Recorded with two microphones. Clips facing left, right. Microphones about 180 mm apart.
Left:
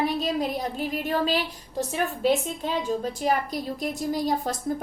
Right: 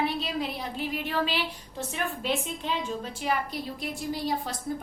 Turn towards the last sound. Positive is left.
turn(degrees=45)  # may be behind; listen again after turning